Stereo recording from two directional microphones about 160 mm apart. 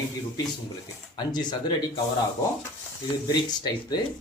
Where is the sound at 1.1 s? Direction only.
25° left (ahead or behind).